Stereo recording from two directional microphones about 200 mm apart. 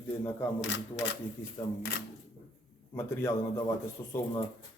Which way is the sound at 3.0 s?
15° left (ahead or behind).